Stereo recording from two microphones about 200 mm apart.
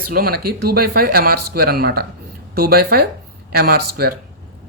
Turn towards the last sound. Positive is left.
turn(degrees=-50)  # may be behind; listen again after turning